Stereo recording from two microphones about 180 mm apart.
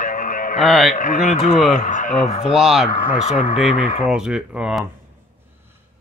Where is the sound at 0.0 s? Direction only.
50° left (ahead or behind).